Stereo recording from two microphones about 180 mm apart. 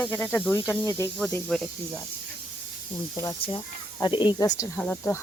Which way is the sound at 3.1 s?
20° left (ahead or behind).